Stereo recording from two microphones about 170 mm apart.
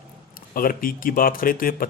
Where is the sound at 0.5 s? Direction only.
55° left (ahead or behind).